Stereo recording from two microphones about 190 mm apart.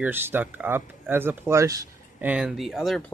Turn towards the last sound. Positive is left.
turn(degrees=0)  # may be behind; listen again after turning